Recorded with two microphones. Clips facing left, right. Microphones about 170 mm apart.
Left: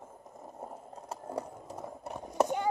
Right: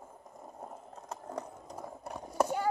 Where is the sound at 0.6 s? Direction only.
10° left (ahead or behind).